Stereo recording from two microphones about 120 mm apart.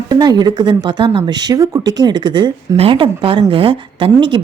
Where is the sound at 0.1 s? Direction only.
35° right (ahead or behind).